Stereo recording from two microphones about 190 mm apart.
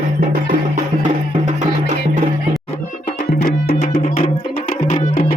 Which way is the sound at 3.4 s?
50° left (ahead or behind).